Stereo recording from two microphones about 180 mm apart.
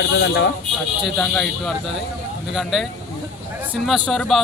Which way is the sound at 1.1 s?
5° left (ahead or behind).